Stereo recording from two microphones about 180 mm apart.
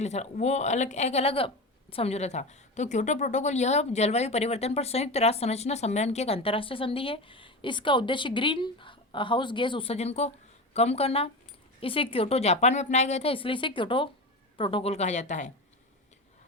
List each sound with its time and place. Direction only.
0.0 s speech: 40° left (ahead or behind)